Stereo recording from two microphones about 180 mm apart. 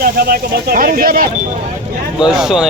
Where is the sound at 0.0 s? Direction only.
55° right (ahead or behind).